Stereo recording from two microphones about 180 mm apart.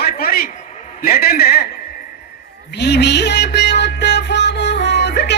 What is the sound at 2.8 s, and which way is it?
Music, 70° left (ahead or behind).